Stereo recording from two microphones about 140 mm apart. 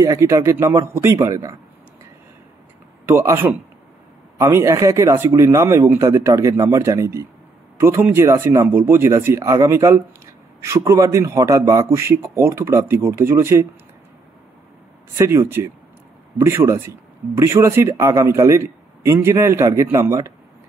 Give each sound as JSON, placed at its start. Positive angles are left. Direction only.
{"t": 0.0, "sound": "speech", "side_deg": -20}
{"t": 3.1, "sound": "speech", "side_deg": -15}
{"t": 15.1, "sound": "speech", "side_deg": -20}